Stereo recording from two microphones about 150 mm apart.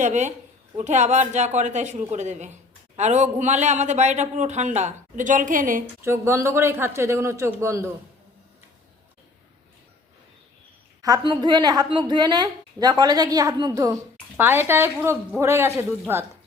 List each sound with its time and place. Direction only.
0.0 s a man's voice: 50° right (ahead or behind)
6.0 s a man's voice: 15° right (ahead or behind)
11.0 s a woman's voice: 30° right (ahead or behind)
14.3 s a man's voice: 15° right (ahead or behind)